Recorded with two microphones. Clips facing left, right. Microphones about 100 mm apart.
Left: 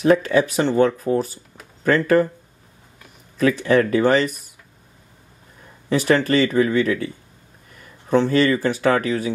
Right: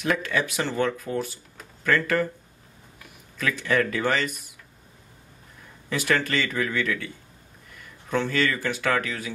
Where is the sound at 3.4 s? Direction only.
35° left (ahead or behind).